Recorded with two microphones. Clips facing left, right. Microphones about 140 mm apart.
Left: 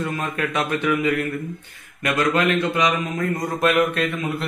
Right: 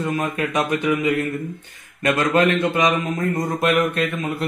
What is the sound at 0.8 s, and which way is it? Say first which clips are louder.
Speech: left 1 dB; 30° right (ahead or behind).